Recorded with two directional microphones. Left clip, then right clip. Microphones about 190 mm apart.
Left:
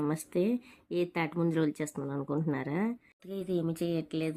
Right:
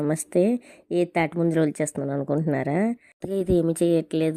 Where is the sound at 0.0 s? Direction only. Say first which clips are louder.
Right 9 dB; 30° right (ahead or behind).